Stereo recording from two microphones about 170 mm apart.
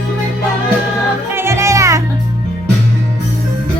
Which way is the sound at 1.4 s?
15° right (ahead or behind).